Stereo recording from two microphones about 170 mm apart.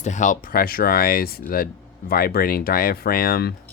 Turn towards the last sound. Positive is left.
turn(degrees=65)  # may be behind; listen again after turning